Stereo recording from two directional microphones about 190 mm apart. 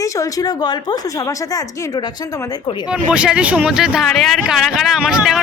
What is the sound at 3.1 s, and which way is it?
Speech, 5° right (ahead or behind).